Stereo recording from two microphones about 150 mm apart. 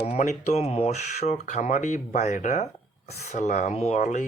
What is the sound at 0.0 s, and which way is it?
Speech, 50° left (ahead or behind).